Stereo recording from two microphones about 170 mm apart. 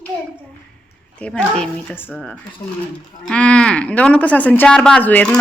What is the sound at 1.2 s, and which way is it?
A woman's voice, 5° left (ahead or behind).